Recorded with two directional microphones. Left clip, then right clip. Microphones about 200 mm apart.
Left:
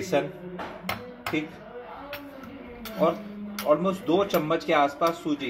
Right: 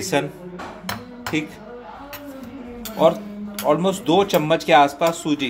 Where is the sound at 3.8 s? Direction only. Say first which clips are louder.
Right 6 dB; 50° right (ahead or behind).